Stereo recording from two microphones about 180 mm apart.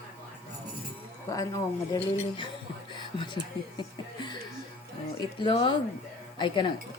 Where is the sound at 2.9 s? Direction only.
25° left (ahead or behind).